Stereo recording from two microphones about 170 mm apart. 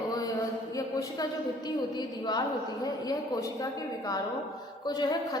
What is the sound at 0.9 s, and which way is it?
A woman's voice, 25° left (ahead or behind).